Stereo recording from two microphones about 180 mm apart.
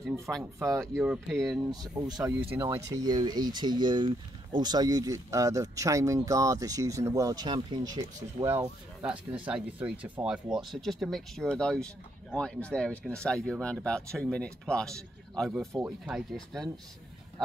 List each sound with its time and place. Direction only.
0.6 s speech: 15° right (ahead or behind)
0.9 s speech: 5° right (ahead or behind)
2.0 s speech: 20° right (ahead or behind); by 16.7 s centre (ahead or behind)